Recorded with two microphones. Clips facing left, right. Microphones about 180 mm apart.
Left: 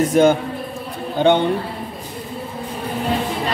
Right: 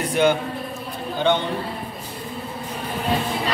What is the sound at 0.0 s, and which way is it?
Speech, 45° left (ahead or behind).